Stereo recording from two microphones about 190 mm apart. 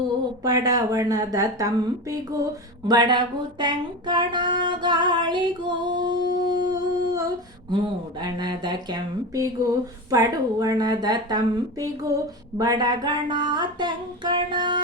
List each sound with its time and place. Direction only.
0.4 s speech: 20° right (ahead or behind)